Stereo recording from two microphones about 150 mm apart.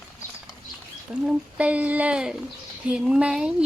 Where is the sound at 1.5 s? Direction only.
10° right (ahead or behind).